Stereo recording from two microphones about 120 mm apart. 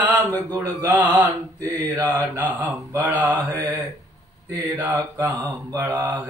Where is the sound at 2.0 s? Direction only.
15° right (ahead or behind).